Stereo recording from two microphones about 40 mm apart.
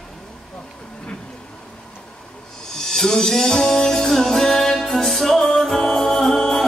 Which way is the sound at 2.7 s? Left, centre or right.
Centre.